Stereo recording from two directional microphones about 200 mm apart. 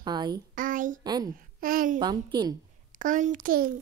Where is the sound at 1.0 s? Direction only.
20° right (ahead or behind).